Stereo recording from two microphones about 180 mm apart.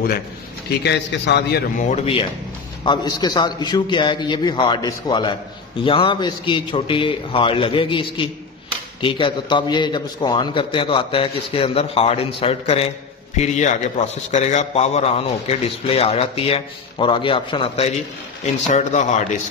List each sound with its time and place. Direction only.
0.8 s a man's voice: 70° left (ahead or behind)
1.8 s a man's voice: 35° left (ahead or behind)
2.8 s a man's voice: 25° left (ahead or behind); by 19.3 s 40° left (ahead or behind)